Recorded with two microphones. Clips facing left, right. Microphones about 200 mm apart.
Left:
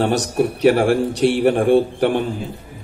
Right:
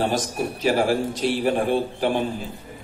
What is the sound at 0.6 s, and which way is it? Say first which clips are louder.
A man's voice: left 5 dB; 65° left (ahead or behind).